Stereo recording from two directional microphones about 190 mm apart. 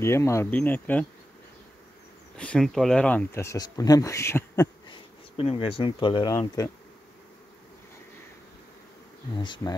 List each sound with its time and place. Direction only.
0.0 s speech: 15° left (ahead or behind)
2.3 s speech: 5° left (ahead or behind)
5.4 s speech: 30° left (ahead or behind)
9.3 s speech: 25° left (ahead or behind)